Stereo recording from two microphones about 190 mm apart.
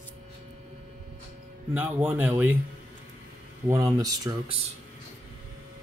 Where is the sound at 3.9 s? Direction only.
20° right (ahead or behind).